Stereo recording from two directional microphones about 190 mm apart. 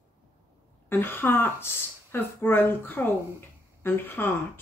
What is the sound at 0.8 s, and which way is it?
Speech, 10° left (ahead or behind).